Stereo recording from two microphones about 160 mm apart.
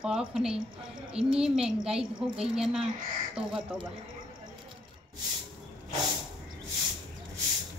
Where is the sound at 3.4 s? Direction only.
35° right (ahead or behind).